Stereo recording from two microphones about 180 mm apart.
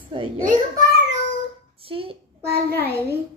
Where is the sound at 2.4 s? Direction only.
60° right (ahead or behind).